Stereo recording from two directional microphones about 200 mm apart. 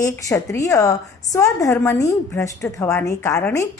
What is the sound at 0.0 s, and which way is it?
A woman's voice, 15° left (ahead or behind).